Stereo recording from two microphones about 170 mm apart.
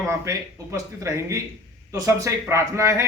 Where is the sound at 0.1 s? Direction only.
20° right (ahead or behind).